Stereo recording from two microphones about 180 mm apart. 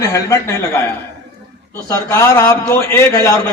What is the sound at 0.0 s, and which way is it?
Speech, 15° left (ahead or behind).